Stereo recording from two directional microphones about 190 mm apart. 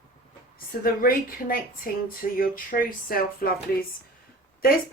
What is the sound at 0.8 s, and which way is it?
Speech, 50° left (ahead or behind).